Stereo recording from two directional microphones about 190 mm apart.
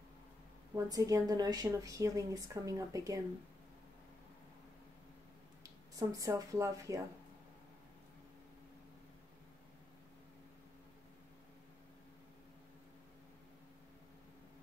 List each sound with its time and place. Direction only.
0.8 s a woman's voice: 20° right (ahead or behind)
5.6 s speech: 15° right (ahead or behind)